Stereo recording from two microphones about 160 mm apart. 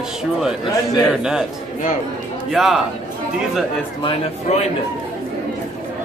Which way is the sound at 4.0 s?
35° left (ahead or behind).